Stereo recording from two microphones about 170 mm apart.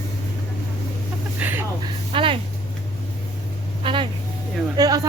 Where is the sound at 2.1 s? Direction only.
30° right (ahead or behind).